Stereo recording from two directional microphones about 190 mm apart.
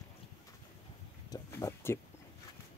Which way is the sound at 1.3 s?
15° left (ahead or behind).